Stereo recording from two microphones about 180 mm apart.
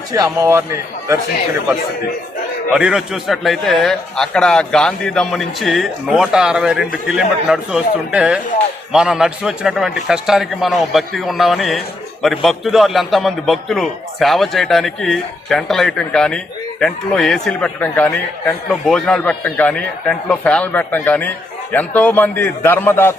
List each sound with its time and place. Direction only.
0.1 s a man's voice: 15° right (ahead or behind)
2.7 s a man's voice: 5° right (ahead or behind); by 23.1 s 10° left (ahead or behind)